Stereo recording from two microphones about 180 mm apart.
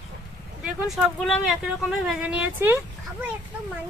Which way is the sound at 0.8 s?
Centre (ahead or behind).